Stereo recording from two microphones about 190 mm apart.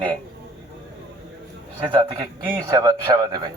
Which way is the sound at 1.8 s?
25° right (ahead or behind).